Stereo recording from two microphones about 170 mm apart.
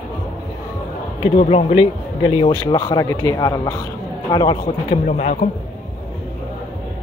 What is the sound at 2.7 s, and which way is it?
Speech, 20° left (ahead or behind).